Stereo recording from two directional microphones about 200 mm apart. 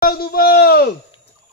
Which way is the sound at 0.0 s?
50° left (ahead or behind).